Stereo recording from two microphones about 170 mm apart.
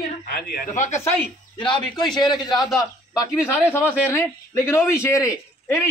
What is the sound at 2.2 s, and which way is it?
Speech, 25° left (ahead or behind).